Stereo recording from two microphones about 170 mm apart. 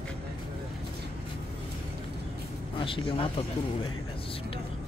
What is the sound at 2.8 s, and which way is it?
Speech, 30° left (ahead or behind).